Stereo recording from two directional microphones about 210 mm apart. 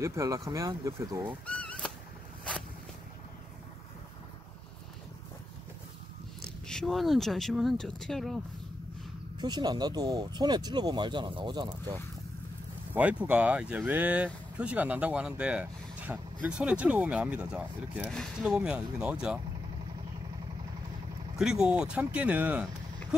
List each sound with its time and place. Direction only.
0.0 s speech: 15° right (ahead or behind)
1.4 s a sound: 5° left (ahead or behind)
6.7 s speech: centre (ahead or behind)
9.4 s speech: 20° right (ahead or behind)
12.9 s speech: 5° right (ahead or behind)
21.4 s speech: 5° right (ahead or behind)